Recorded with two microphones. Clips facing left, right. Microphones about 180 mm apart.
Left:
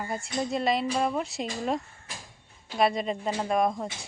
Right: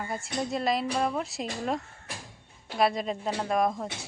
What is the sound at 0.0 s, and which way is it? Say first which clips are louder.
A woman's voice: left 1 dB; centre (ahead or behind).